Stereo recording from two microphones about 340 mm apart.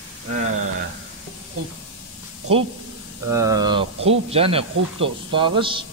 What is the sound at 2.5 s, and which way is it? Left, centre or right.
A man's voice, centre.